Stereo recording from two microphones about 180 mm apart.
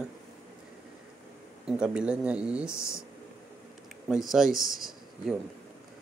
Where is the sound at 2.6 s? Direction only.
15° left (ahead or behind).